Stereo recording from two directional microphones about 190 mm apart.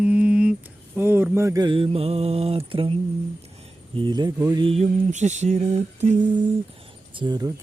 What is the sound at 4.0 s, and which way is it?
Speech, 20° right (ahead or behind).